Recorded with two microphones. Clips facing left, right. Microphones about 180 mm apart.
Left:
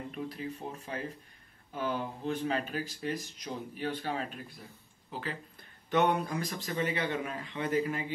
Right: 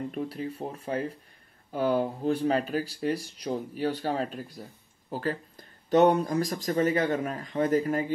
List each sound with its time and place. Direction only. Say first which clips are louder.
0.1 s speech: right 5 dB; 40° right (ahead or behind)